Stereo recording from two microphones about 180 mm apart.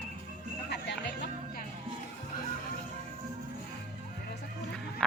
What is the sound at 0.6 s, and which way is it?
Music, 70° left (ahead or behind).